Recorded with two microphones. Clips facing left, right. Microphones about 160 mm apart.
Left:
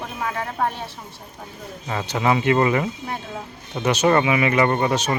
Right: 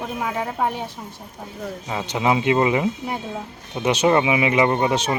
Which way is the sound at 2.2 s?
15° right (ahead or behind).